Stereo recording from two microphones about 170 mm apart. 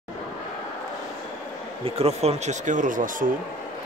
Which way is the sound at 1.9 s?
35° right (ahead or behind).